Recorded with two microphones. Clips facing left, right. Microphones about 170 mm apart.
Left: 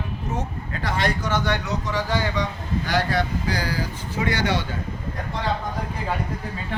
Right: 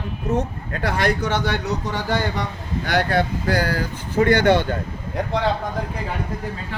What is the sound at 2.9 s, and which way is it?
Speech, 60° right (ahead or behind).